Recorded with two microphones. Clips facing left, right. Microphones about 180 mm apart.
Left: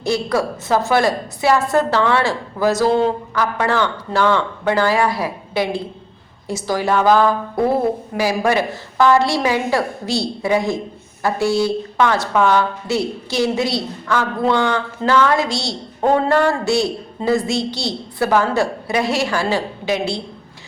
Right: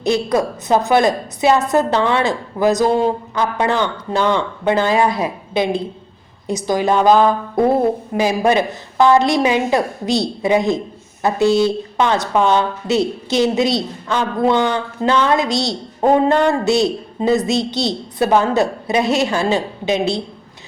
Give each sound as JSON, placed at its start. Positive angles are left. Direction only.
{"t": 0.0, "sound": "a woman's voice", "side_deg": -20}